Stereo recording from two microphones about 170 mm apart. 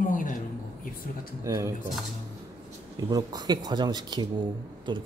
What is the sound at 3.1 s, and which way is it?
A man's voice, 20° right (ahead or behind).